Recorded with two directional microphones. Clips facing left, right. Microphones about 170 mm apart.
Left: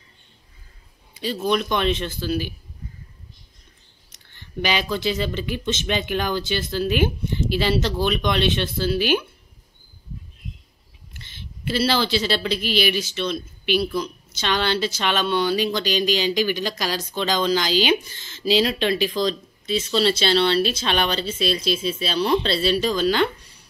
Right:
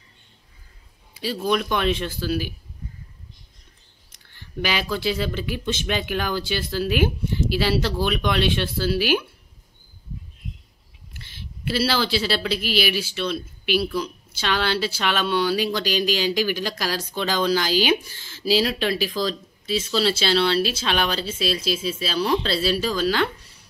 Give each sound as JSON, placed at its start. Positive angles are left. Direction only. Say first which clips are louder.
{"t": 1.1, "sound": "speech", "louder": "left 1 dB", "side_deg": -10}
{"t": 4.6, "sound": "speech", "louder": "left 2 dB", "side_deg": -5}
{"t": 11.2, "sound": "speech", "louder": "even", "side_deg": -10}